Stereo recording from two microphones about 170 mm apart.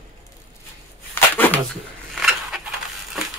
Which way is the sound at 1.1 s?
10° left (ahead or behind).